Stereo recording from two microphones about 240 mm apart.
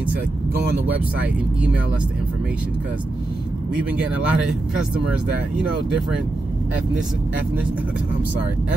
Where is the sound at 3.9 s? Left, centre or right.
Centre.